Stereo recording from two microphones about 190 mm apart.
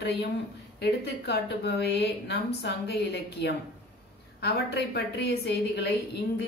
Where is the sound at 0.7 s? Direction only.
60° left (ahead or behind).